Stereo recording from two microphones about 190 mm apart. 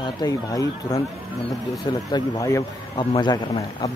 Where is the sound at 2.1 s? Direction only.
20° left (ahead or behind).